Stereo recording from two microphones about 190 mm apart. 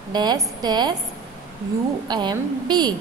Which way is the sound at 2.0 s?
25° right (ahead or behind).